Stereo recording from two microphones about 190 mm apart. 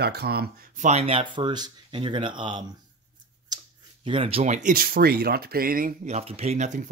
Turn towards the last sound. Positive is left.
turn(degrees=-40)  # may be behind; listen again after turning